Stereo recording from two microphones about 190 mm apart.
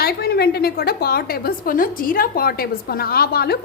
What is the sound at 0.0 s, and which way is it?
A woman's voice, 55° left (ahead or behind).